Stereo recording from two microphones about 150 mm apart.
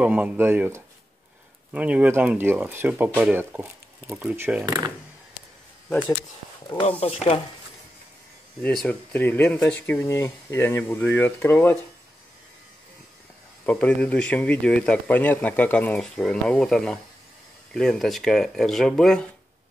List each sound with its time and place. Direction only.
0.0 s speech: 10° right (ahead or behind)
4.6 s speech: 25° right (ahead or behind)
5.9 s speech: 5° left (ahead or behind)
7.0 s speech: 45° left (ahead or behind)
8.6 s speech: 10° left (ahead or behind)
9.9 s speech: 20° left (ahead or behind)
13.7 s speech: 10° left (ahead or behind)